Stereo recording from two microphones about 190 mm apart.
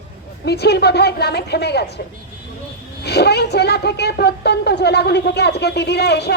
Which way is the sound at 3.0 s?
60° left (ahead or behind).